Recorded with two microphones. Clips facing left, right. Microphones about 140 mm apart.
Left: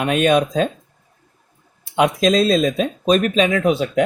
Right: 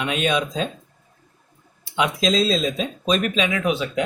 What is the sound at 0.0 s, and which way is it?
Speech, 50° left (ahead or behind).